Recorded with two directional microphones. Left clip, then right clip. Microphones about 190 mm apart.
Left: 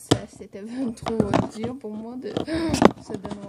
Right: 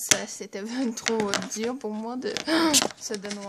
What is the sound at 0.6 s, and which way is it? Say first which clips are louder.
Speech: even; centre (ahead or behind).